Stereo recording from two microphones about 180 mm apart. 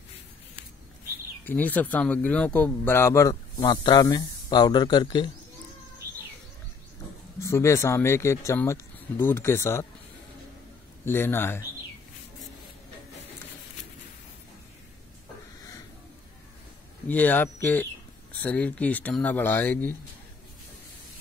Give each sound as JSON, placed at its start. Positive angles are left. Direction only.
{"t": 1.4, "sound": "speech", "side_deg": 10}
{"t": 7.3, "sound": "speech", "side_deg": 15}
{"t": 11.1, "sound": "speech", "side_deg": 10}
{"t": 17.1, "sound": "speech", "side_deg": 10}